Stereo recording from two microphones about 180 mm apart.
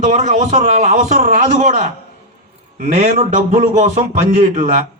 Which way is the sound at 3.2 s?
40° right (ahead or behind).